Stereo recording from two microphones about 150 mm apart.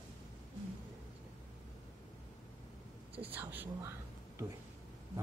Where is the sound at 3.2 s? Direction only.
10° right (ahead or behind).